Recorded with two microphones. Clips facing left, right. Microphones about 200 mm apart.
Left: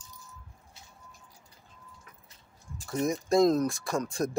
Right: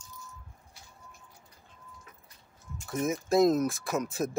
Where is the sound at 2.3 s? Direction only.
30° left (ahead or behind).